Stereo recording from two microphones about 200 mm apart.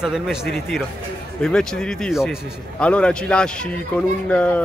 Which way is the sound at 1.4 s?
5° left (ahead or behind).